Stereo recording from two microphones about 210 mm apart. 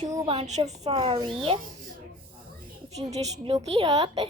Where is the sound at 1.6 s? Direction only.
40° right (ahead or behind).